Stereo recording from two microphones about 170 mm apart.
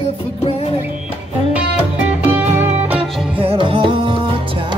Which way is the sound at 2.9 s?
35° right (ahead or behind).